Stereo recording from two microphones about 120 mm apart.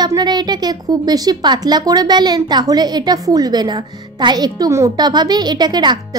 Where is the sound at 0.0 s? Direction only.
35° right (ahead or behind).